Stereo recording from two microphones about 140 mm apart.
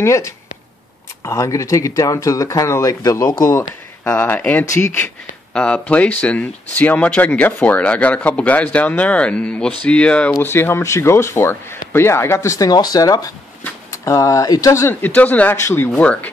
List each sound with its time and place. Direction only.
0.0 s speech: 20° left (ahead or behind)
4.0 s speech: 10° left (ahead or behind)
5.5 s speech: 5° left (ahead or behind)